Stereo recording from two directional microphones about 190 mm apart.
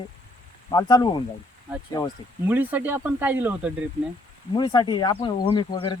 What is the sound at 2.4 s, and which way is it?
Speech, 10° right (ahead or behind).